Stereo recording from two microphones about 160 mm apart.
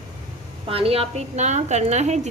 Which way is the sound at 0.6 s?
35° right (ahead or behind).